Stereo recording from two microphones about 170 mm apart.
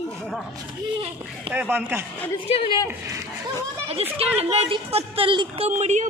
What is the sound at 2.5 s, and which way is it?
Speech, 30° left (ahead or behind).